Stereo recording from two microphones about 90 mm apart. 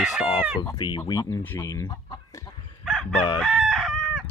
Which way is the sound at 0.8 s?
55° left (ahead or behind).